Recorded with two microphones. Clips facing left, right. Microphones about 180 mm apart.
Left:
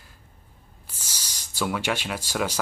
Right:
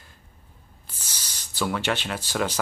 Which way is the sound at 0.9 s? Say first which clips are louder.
Even; 10° left (ahead or behind).